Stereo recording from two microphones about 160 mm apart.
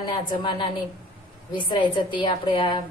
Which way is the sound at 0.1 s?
30° left (ahead or behind).